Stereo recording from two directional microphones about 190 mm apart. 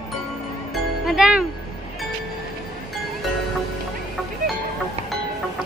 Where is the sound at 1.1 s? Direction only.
5° right (ahead or behind).